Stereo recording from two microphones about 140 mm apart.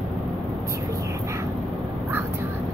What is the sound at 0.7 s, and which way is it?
Whispering, 20° right (ahead or behind).